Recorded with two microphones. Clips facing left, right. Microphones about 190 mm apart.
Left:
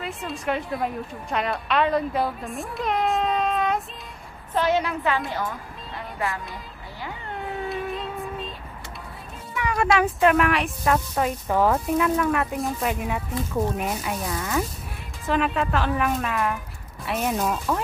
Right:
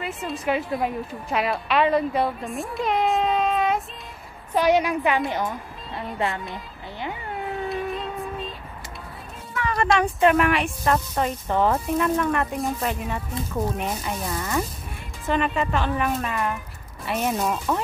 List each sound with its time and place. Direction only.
0.0 s a woman's voice: centre (ahead or behind)
4.6 s a woman's voice: 15° right (ahead or behind)
6.5 s a sound: 20° right (ahead or behind)
7.3 s cat: centre (ahead or behind)
9.6 s speech: 10° left (ahead or behind)